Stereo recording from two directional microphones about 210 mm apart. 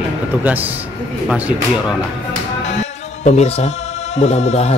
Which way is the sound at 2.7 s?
30° left (ahead or behind).